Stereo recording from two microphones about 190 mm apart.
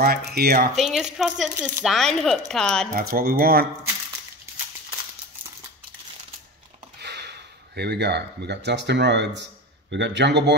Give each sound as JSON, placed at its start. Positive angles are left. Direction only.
{"t": 0.0, "sound": "speech", "side_deg": -55}
{"t": 0.7, "sound": "speech", "side_deg": 0}
{"t": 2.9, "sound": "speech", "side_deg": -55}
{"t": 7.0, "sound": "speech", "side_deg": -60}